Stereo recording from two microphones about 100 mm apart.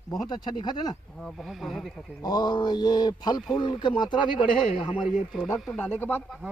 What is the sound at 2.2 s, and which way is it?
A man's voice, 45° left (ahead or behind).